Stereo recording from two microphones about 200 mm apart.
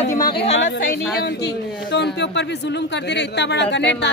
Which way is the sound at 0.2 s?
50° left (ahead or behind).